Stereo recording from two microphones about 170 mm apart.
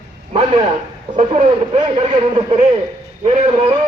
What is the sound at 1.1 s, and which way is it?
A man's voice, 35° right (ahead or behind).